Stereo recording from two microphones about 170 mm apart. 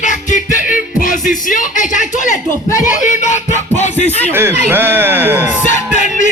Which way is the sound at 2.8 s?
45° left (ahead or behind).